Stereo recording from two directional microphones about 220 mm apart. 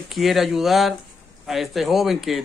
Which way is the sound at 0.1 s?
Centre (ahead or behind).